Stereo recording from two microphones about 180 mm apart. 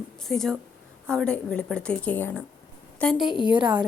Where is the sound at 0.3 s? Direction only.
5° left (ahead or behind).